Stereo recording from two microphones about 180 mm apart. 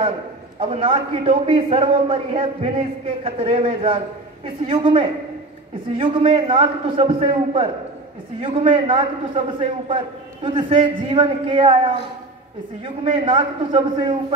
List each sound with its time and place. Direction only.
0.6 s a man's voice: 30° right (ahead or behind)